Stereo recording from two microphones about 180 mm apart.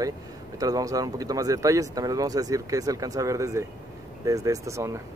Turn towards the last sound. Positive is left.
turn(degrees=-15)  # may be behind; listen again after turning